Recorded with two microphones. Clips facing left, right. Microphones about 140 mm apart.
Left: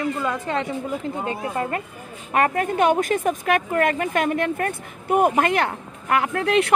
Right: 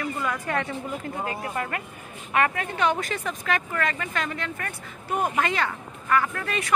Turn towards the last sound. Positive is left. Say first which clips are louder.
# left 9 dB
turn(degrees=70)  # may be behind; listen again after turning